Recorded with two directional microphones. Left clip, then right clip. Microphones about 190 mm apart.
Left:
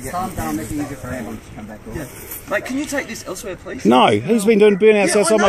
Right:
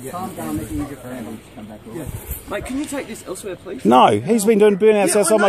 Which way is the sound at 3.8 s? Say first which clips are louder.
Right 1 dB; 20° right (ahead or behind).